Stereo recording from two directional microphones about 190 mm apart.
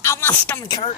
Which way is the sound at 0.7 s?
20° left (ahead or behind).